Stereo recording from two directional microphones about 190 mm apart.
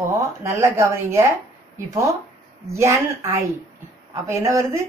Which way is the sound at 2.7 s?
15° right (ahead or behind).